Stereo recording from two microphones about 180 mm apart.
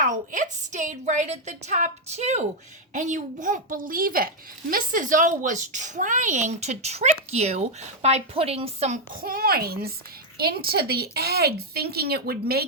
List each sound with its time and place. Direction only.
0.0 s a woman's voice: 45° right (ahead or behind)
9.2 s a woman's voice: 55° right (ahead or behind)